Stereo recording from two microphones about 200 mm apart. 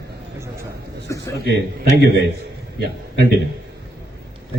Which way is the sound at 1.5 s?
55° right (ahead or behind).